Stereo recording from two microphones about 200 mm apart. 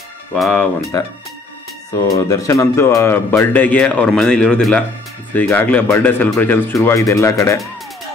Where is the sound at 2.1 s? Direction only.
15° left (ahead or behind).